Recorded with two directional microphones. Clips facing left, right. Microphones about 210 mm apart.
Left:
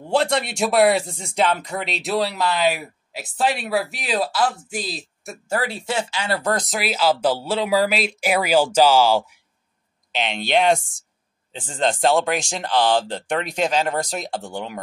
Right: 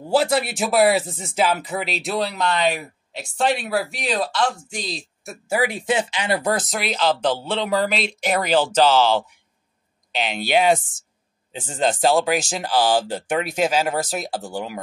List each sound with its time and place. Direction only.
0.0 s speech: 5° right (ahead or behind)
5.6 s speech: 15° right (ahead or behind)
6.6 s speech: 5° left (ahead or behind)
10.1 s speech: 5° right (ahead or behind)